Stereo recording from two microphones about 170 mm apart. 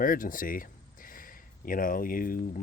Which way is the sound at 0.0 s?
55° left (ahead or behind).